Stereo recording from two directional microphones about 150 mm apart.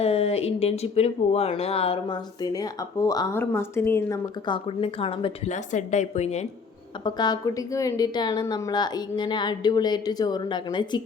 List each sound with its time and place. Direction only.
0.0 s speech: 40° left (ahead or behind); by 4.2 s 15° left (ahead or behind)
4.4 s speech: 35° left (ahead or behind)
5.5 s a woman's voice: 55° left (ahead or behind)
7.0 s a woman's voice: 30° left (ahead or behind)